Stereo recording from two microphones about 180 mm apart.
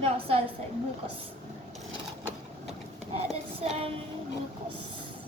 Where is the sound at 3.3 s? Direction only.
35° right (ahead or behind).